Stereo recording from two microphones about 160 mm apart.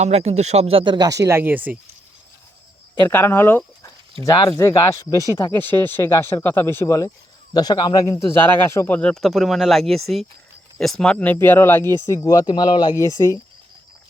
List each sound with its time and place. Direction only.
0.0 s speech: 40° right (ahead or behind)
1.2 s speech: 15° right (ahead or behind)
3.1 s speech: 15° left (ahead or behind)